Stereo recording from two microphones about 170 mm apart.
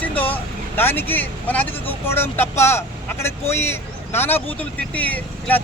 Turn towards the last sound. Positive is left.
turn(degrees=10)  # may be behind; listen again after turning